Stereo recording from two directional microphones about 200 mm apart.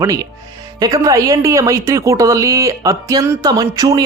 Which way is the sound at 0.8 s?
15° right (ahead or behind).